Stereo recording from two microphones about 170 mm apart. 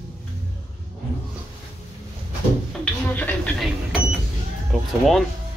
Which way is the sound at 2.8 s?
10° left (ahead or behind).